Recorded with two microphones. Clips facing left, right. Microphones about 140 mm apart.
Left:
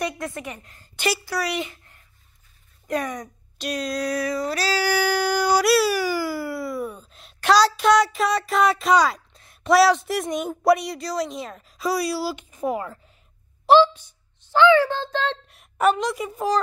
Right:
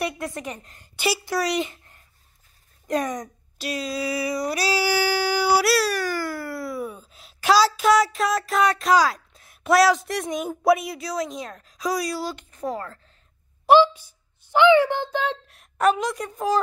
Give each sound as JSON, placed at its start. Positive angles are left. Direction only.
{"t": 0.2, "sound": "speech", "side_deg": -20}
{"t": 0.9, "sound": "a woman's voice", "side_deg": -10}
{"t": 1.2, "sound": "speech", "side_deg": -20}
{"t": 3.5, "sound": "a sound", "side_deg": -5}
{"t": 12.4, "sound": "speech", "side_deg": 10}
{"t": 13.7, "sound": "a child's voice", "side_deg": -10}
{"t": 15.4, "sound": "a woman's voice", "side_deg": 0}